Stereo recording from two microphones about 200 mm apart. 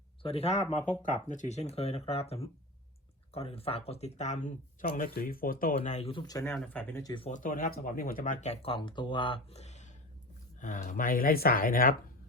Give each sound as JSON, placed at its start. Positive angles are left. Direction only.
{"t": 0.2, "sound": "speech", "side_deg": 30}
{"t": 5.7, "sound": "speech", "side_deg": 35}
{"t": 7.1, "sound": "speech", "side_deg": 30}